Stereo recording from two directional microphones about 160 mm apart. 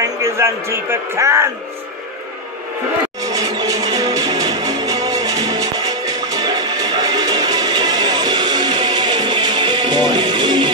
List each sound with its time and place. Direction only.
0.0 s a man's voice: 20° right (ahead or behind)
3.2 s music: 20° right (ahead or behind)